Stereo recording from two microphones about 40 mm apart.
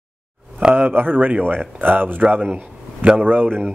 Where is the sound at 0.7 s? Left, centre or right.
Right.